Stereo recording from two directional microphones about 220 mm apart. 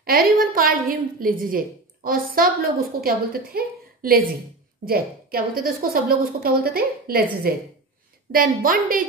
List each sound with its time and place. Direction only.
0.0 s a woman's voice: 40° right (ahead or behind)
8.3 s a woman's voice: 40° right (ahead or behind)